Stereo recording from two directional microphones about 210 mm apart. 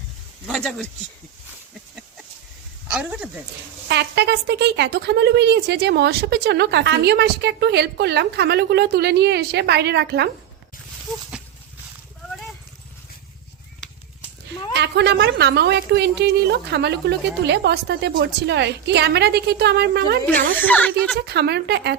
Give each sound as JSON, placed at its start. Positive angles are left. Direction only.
{"t": 0.4, "sound": "a woman's voice", "side_deg": 0}
{"t": 2.9, "sound": "a woman's voice", "side_deg": -5}
{"t": 3.8, "sound": "a woman's voice", "side_deg": -55}
{"t": 14.7, "sound": "a woman's voice", "side_deg": -55}
{"t": 20.6, "sound": "speech", "side_deg": 10}
{"t": 21.2, "sound": "a woman's voice", "side_deg": -50}